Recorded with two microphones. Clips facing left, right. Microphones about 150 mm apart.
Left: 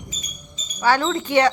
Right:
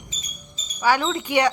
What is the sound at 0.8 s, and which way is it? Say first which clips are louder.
Speech: left 2 dB; 10° right (ahead or behind).